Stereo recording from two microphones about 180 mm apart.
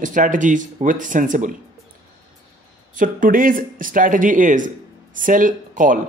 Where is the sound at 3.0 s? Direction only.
50° right (ahead or behind).